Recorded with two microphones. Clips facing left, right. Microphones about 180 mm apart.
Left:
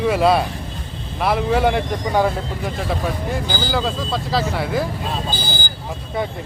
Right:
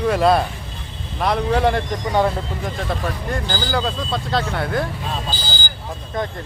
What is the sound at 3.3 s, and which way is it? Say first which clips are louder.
Speech: left 1 dB; centre (ahead or behind).